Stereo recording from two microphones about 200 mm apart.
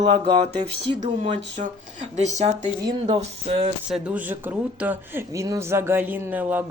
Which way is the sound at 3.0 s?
25° right (ahead or behind).